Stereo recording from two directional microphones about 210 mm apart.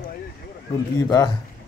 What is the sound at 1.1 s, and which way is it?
Speech, 20° left (ahead or behind).